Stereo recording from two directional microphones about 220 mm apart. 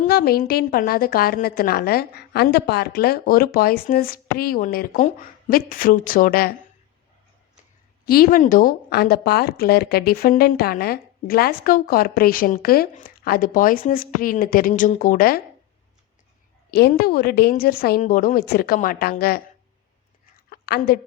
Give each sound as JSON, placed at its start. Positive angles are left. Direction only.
{"t": 0.0, "sound": "a woman's voice", "side_deg": 45}
{"t": 8.0, "sound": "speech", "side_deg": 45}
{"t": 16.7, "sound": "a woman's voice", "side_deg": 45}
{"t": 20.5, "sound": "a sound", "side_deg": 45}